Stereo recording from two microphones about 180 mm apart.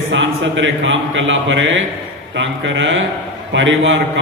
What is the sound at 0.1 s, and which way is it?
A man's voice, 90° right.